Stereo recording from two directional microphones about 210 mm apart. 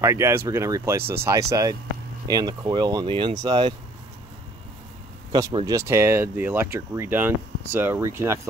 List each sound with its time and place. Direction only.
0.0 s speech: 15° right (ahead or behind)
5.3 s speech: 20° right (ahead or behind)